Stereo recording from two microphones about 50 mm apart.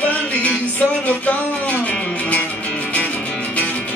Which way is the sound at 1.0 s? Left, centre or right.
Left.